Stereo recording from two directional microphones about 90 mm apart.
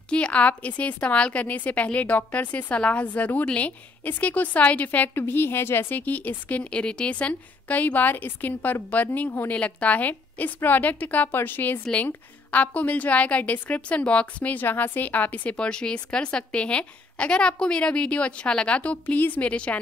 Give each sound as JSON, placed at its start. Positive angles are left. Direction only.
{"t": 0.1, "sound": "a woman's voice", "side_deg": 15}